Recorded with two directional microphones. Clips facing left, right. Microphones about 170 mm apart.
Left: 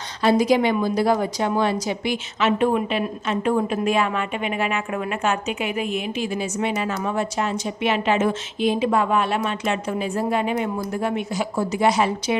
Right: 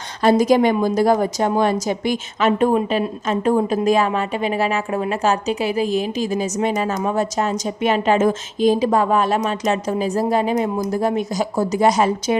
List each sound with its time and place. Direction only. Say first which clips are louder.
0.2 s a woman's voice: right 3 dB; 45° right (ahead or behind)